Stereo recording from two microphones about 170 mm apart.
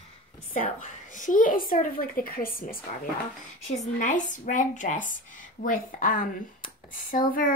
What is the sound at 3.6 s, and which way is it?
Speech, 45° left (ahead or behind).